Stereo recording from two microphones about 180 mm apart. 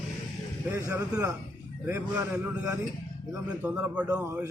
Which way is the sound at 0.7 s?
15° right (ahead or behind).